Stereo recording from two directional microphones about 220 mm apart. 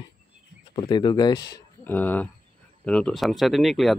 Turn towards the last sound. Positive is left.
turn(degrees=0)  # may be behind; listen again after turning